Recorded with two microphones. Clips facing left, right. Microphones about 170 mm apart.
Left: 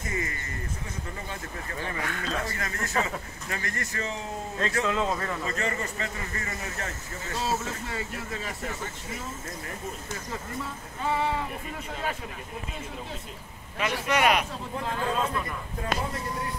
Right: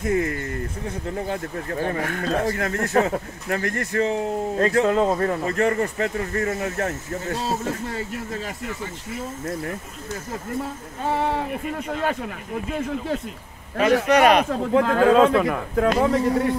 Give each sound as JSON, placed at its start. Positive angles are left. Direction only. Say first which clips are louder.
{"t": 0.0, "sound": "speech", "louder": "right 11 dB", "side_deg": -60}
{"t": 4.6, "sound": "speech", "louder": "right 8 dB", "side_deg": -45}
{"t": 5.5, "sound": "speech", "louder": "right 10 dB", "side_deg": -60}
{"t": 7.4, "sound": "speech", "louder": "right 5 dB", "side_deg": -40}
{"t": 10.6, "sound": "speech", "louder": "right 5 dB", "side_deg": -55}
{"t": 13.7, "sound": "a man's voice", "louder": "right 10 dB", "side_deg": -40}
{"t": 14.4, "sound": "speech", "louder": "right 13 dB", "side_deg": -85}